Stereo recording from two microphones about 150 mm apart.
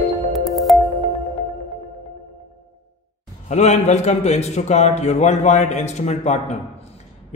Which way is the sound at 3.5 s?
50° left (ahead or behind).